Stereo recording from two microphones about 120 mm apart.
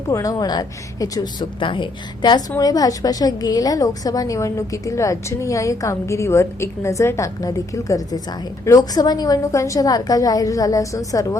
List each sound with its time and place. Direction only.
0.1 s a woman's voice: 30° left (ahead or behind)